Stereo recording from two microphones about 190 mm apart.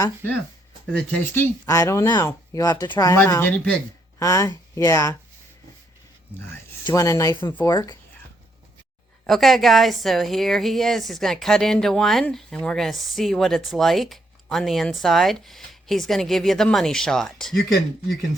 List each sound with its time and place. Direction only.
0.0 s speech: 10° left (ahead or behind)
6.8 s speech: 15° left (ahead or behind)
9.2 s a woman's voice: centre (ahead or behind)